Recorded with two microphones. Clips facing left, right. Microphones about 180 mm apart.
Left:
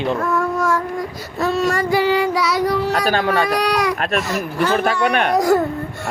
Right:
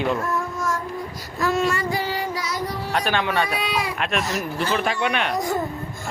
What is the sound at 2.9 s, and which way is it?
Speech, 40° left (ahead or behind).